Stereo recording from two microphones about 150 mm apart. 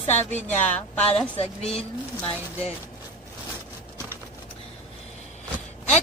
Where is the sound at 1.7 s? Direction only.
40° left (ahead or behind).